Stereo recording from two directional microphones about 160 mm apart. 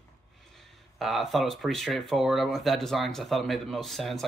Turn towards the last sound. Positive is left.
turn(degrees=0)  # may be behind; listen again after turning